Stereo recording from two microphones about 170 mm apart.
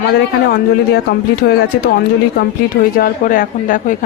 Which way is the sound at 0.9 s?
70° left (ahead or behind).